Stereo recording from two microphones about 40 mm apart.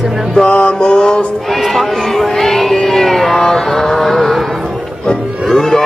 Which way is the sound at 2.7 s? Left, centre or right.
Centre.